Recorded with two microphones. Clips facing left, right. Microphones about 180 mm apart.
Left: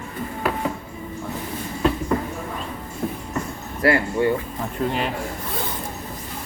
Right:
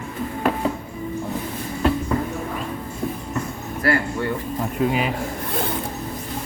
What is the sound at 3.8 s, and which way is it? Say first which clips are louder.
Speech: left 3 dB; 20° left (ahead or behind).